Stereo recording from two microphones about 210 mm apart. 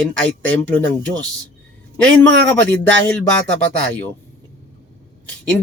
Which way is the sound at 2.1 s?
55° right (ahead or behind).